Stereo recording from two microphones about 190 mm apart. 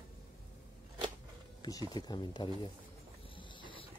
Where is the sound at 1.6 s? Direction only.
20° left (ahead or behind).